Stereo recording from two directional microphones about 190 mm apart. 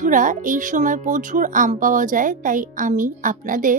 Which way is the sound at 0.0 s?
45° right (ahead or behind).